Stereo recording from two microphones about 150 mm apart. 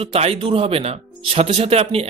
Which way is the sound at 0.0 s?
40° right (ahead or behind).